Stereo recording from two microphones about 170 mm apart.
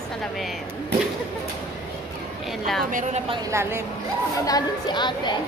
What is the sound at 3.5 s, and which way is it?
Speech, 15° right (ahead or behind).